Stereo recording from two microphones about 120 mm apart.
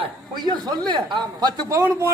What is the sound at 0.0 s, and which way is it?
Speech, 35° right (ahead or behind).